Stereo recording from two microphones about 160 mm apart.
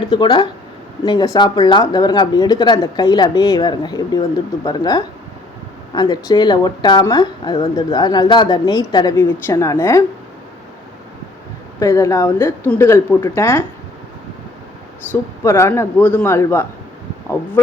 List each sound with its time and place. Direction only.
0.0 s speech: 25° left (ahead or behind)
11.8 s a woman's voice: 20° left (ahead or behind)
15.1 s a woman's voice: 20° left (ahead or behind)